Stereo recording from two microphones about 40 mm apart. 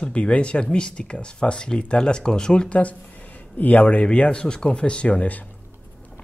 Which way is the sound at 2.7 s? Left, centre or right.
Left.